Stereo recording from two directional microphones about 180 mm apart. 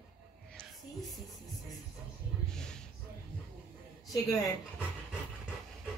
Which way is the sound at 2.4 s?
5° left (ahead or behind).